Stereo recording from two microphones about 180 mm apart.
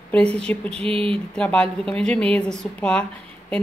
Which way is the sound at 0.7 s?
30° right (ahead or behind).